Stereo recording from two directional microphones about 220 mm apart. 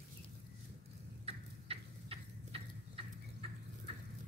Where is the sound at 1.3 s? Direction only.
25° right (ahead or behind).